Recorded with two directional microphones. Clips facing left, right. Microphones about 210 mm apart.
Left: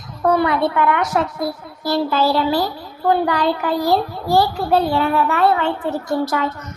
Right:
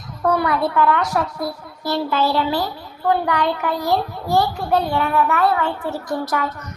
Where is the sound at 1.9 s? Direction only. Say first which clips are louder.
Left 2 dB; 35° left (ahead or behind).